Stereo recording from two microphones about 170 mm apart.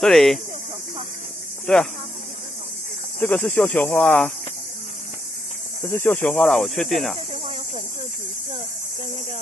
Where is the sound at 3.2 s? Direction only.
10° left (ahead or behind).